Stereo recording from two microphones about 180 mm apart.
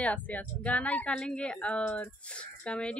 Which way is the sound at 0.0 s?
10° left (ahead or behind).